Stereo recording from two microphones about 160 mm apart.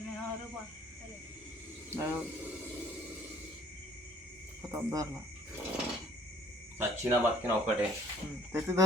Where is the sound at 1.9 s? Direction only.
15° right (ahead or behind).